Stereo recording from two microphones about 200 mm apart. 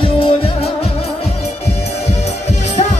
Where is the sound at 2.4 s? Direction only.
35° left (ahead or behind).